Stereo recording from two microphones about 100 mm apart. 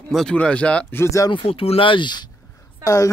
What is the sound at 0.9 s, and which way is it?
Speech, 30° left (ahead or behind).